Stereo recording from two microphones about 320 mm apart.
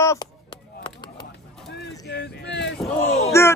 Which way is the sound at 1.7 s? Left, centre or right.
Left.